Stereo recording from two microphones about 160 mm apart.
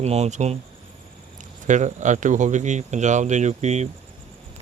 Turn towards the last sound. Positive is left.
turn(degrees=-45)  # may be behind; listen again after turning